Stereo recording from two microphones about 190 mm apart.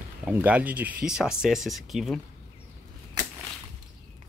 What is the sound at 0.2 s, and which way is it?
Speech, 10° right (ahead or behind).